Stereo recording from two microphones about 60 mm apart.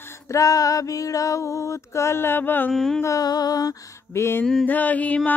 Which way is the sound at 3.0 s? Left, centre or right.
Left.